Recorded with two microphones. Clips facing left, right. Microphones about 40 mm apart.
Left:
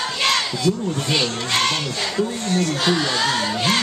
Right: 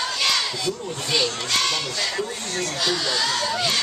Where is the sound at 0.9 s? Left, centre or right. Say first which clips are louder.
Left 2 dB; left.